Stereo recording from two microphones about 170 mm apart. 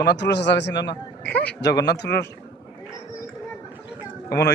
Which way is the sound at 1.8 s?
75° left (ahead or behind).